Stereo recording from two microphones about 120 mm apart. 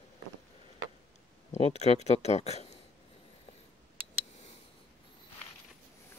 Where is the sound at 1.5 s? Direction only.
65° left (ahead or behind).